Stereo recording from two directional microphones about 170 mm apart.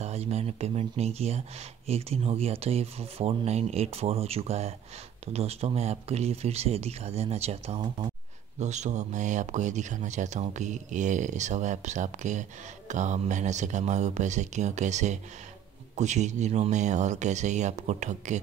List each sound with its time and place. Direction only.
0.0 s speech: 40° right (ahead or behind)